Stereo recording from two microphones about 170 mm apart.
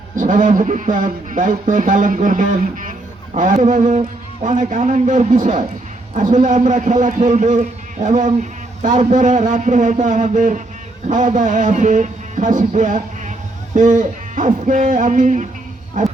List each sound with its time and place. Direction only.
0.2 s a man's voice: 50° right (ahead or behind)